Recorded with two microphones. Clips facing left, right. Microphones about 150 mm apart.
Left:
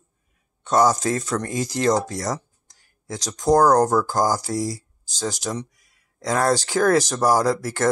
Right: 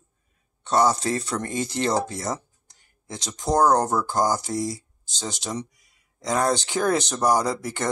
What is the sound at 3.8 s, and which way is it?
Speech, centre (ahead or behind).